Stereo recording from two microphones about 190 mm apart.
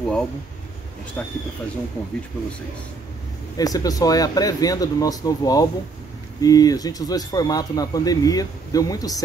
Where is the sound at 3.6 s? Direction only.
20° left (ahead or behind).